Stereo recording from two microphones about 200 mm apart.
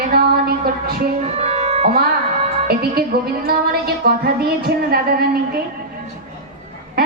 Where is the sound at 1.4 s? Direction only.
30° right (ahead or behind).